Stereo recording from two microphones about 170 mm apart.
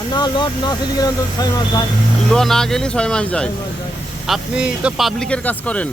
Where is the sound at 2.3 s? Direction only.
5° left (ahead or behind).